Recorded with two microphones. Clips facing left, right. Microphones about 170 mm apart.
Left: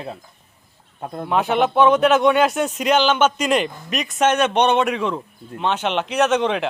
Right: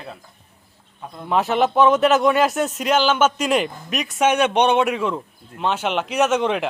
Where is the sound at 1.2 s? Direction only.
Centre (ahead or behind).